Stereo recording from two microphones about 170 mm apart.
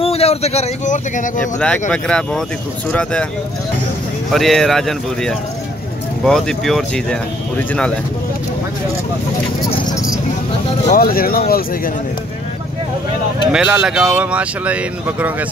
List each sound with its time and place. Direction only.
0.0 s speech: 35° left (ahead or behind)
1.6 s speech: 5° left (ahead or behind)
4.3 s speech: centre (ahead or behind)
10.9 s speech: 60° left (ahead or behind)
13.5 s speech: 5° right (ahead or behind)